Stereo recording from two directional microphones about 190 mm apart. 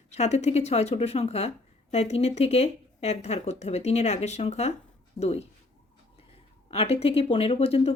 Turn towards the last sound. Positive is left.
turn(degrees=30)  # may be behind; listen again after turning